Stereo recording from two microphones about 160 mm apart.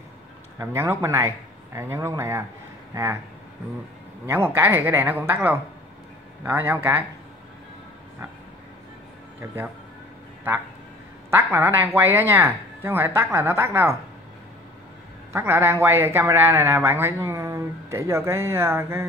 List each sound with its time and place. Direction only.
0.6 s speech: 15° right (ahead or behind)
4.3 s speech: 15° right (ahead or behind)
11.2 s speech: 15° right (ahead or behind)
15.3 s speech: 15° right (ahead or behind)